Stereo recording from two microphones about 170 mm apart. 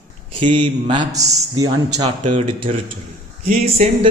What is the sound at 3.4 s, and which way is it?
Speech, 45° right (ahead or behind).